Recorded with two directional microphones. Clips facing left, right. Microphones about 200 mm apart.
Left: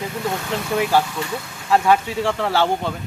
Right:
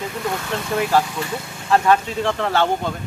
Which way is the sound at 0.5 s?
10° left (ahead or behind).